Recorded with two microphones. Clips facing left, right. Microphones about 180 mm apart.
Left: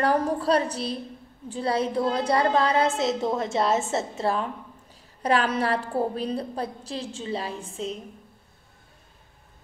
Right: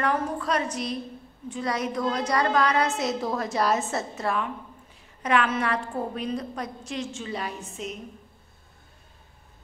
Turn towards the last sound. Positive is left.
turn(degrees=30)  # may be behind; listen again after turning